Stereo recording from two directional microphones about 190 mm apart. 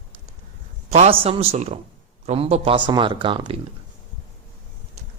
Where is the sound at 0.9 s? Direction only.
35° right (ahead or behind).